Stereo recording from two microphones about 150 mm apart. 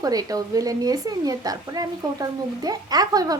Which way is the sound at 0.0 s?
25° right (ahead or behind).